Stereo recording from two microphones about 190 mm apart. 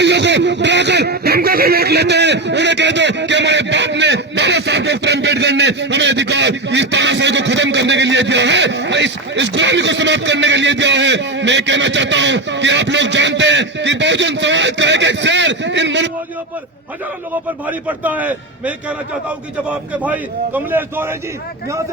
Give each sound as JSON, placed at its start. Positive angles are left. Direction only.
{"t": 0.0, "sound": "speech", "side_deg": -65}
{"t": 17.7, "sound": "a man's voice", "side_deg": -10}